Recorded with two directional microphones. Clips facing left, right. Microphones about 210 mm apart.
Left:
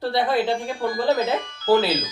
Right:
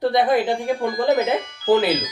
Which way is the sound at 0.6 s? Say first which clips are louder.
Right 2 dB; 15° right (ahead or behind).